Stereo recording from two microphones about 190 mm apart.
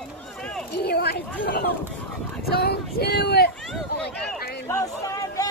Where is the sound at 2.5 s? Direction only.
60° left (ahead or behind).